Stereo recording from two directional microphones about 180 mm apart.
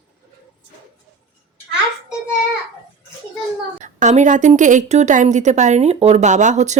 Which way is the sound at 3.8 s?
40° right (ahead or behind).